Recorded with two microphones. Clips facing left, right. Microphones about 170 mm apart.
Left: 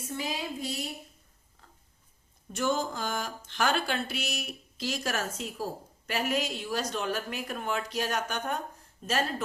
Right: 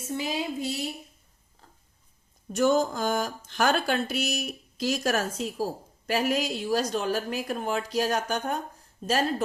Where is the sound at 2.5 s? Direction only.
40° right (ahead or behind).